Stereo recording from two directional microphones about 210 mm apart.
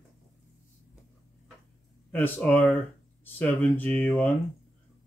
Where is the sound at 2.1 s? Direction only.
10° left (ahead or behind).